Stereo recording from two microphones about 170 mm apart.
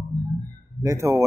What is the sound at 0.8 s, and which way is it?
Speech, 15° right (ahead or behind).